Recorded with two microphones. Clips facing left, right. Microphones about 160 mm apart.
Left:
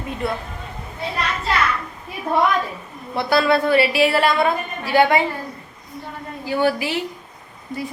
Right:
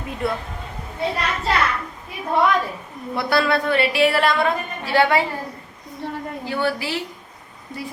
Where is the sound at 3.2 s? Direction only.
Centre (ahead or behind).